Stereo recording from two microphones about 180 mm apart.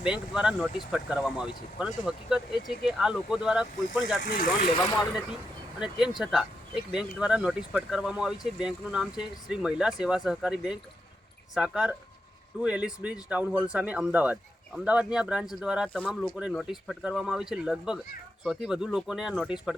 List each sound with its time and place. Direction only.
0.0 s speech: 5° right (ahead or behind)
4.2 s speech: 55° left (ahead or behind)
5.8 s speech: 5° right (ahead or behind)
15.9 s speech: 5° left (ahead or behind)